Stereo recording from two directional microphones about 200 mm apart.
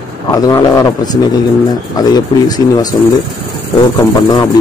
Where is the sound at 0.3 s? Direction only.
20° left (ahead or behind).